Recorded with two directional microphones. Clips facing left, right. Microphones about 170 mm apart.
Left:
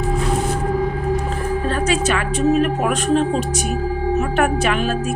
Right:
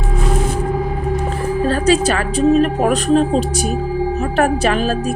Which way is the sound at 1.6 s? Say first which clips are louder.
Right 6 dB; 35° right (ahead or behind).